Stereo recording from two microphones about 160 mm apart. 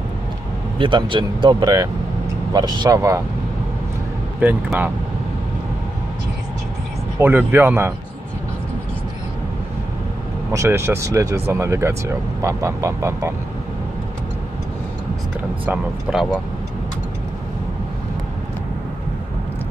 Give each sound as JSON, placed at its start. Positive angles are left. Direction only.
{"t": 0.7, "sound": "speech", "side_deg": -30}
{"t": 4.4, "sound": "speech", "side_deg": -10}
{"t": 7.2, "sound": "speech", "side_deg": -15}
{"t": 10.5, "sound": "speech", "side_deg": -15}
{"t": 15.6, "sound": "speech", "side_deg": -5}